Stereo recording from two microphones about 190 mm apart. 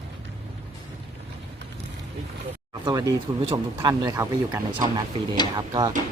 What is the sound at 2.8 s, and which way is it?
A man's voice, 15° right (ahead or behind).